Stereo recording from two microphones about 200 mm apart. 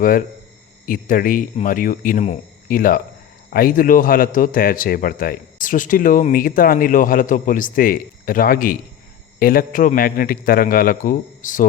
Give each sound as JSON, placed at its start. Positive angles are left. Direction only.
{"t": 0.0, "sound": "speech", "side_deg": 45}